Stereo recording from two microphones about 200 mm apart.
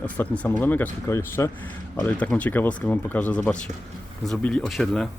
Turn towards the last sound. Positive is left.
turn(degrees=5)  # may be behind; listen again after turning